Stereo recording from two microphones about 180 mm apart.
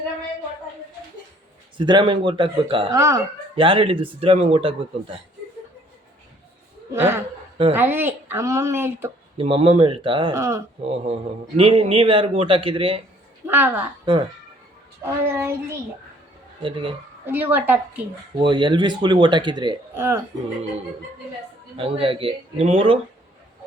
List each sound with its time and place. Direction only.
1.8 s a man's voice: 25° right (ahead or behind)
6.9 s a woman's voice: 15° right (ahead or behind)
9.4 s a man's voice: 30° right (ahead or behind)
10.3 s a woman's voice: 15° right (ahead or behind)
10.8 s a man's voice: 35° right (ahead or behind)
13.5 s a woman's voice: 10° right (ahead or behind)
14.0 s speech: 25° right (ahead or behind)
15.0 s a woman's voice: 15° right (ahead or behind)
17.2 s a woman's voice: 10° right (ahead or behind)
18.3 s a man's voice: 25° right (ahead or behind)
19.9 s speech: 15° right (ahead or behind)
21.8 s speech: 30° right (ahead or behind)